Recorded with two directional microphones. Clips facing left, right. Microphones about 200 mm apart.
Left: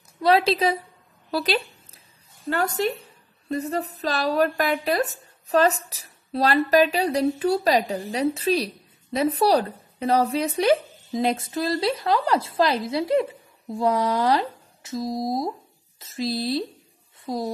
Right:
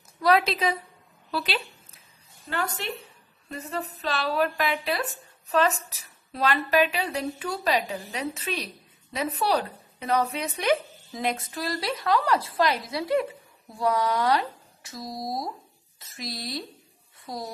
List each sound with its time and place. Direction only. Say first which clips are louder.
0.2 s a woman's voice: left 3 dB; 30° left (ahead or behind)